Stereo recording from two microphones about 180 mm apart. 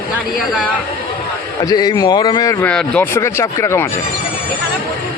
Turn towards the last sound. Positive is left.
turn(degrees=15)  # may be behind; listen again after turning